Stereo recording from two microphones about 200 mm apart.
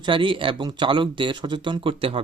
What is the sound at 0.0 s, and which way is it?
Speech, 25° right (ahead or behind).